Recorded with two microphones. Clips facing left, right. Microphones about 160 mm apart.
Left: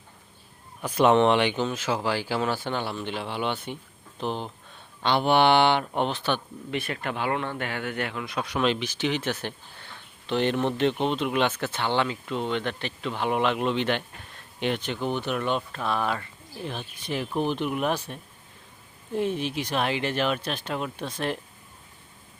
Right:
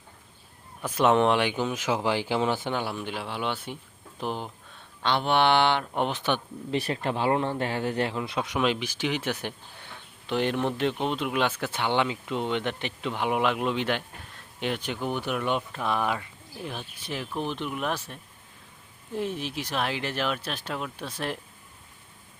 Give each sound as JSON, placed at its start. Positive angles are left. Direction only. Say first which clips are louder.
{"t": 0.8, "sound": "speech", "louder": "left 2 dB", "side_deg": 0}
{"t": 5.0, "sound": "speech", "louder": "left 3 dB", "side_deg": 5}
{"t": 6.0, "sound": "speech", "louder": "left 1 dB", "side_deg": -15}
{"t": 6.7, "sound": "speech", "louder": "right 3 dB", "side_deg": -35}
{"t": 8.6, "sound": "speech", "louder": "left 3 dB", "side_deg": -10}